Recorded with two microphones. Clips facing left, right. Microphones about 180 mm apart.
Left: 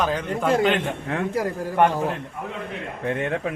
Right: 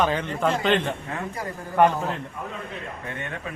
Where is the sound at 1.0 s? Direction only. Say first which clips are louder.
Left 7 dB; 80° left.